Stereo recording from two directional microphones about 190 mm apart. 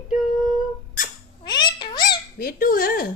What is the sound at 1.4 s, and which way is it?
Cat, 25° left (ahead or behind).